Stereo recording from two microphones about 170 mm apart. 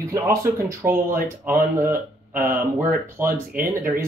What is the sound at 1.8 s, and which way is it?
Speech, 55° right (ahead or behind).